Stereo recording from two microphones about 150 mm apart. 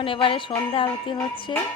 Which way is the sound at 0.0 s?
35° left (ahead or behind).